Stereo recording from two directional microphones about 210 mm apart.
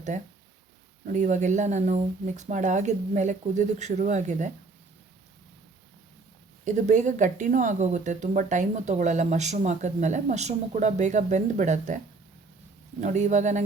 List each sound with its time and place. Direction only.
0.1 s speech: 35° right (ahead or behind)
6.7 s speech: 35° right (ahead or behind)
13.0 s speech: 35° right (ahead or behind)